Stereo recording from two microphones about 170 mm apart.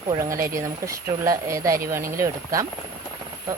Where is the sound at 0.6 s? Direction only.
20° right (ahead or behind).